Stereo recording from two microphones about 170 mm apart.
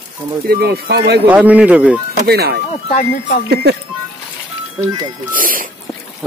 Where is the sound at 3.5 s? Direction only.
70° right (ahead or behind).